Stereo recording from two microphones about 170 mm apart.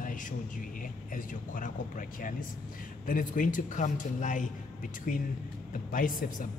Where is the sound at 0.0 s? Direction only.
50° left (ahead or behind).